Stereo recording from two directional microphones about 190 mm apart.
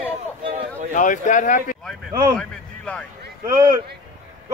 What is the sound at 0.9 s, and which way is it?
Speech, 40° left (ahead or behind).